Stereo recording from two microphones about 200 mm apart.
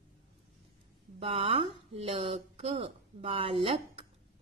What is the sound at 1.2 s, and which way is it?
Speech, 30° right (ahead or behind).